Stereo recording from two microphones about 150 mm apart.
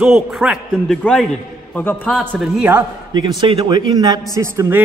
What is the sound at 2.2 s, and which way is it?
Speech, 10° right (ahead or behind).